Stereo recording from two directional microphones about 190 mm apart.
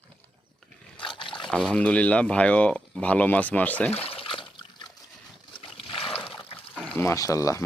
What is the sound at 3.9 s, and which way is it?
Water, 30° left (ahead or behind).